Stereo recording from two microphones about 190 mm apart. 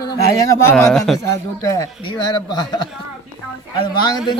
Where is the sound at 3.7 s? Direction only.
20° left (ahead or behind).